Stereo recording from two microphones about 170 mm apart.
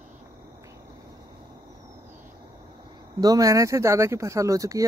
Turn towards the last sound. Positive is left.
turn(degrees=-20)  # may be behind; listen again after turning